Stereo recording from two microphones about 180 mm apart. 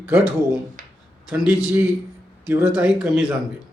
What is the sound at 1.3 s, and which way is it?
Speech, 10° right (ahead or behind).